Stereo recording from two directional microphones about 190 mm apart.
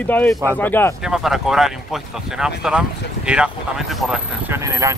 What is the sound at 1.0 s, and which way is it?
Speech, centre (ahead or behind).